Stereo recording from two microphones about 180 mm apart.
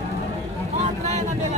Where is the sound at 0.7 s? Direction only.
40° right (ahead or behind).